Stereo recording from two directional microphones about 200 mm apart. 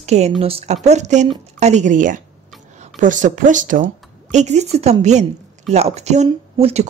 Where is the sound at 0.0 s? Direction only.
35° right (ahead or behind).